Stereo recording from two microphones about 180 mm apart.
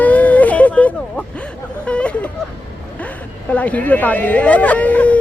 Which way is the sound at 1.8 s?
5° left (ahead or behind).